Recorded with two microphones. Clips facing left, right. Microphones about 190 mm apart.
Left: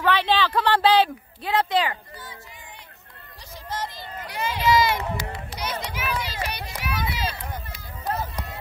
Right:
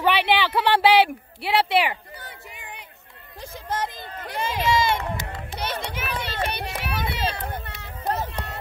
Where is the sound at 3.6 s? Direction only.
55° right (ahead or behind).